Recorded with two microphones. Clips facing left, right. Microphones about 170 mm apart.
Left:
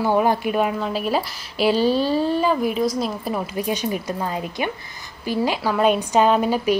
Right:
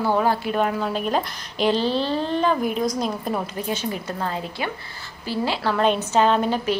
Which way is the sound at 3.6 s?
15° left (ahead or behind).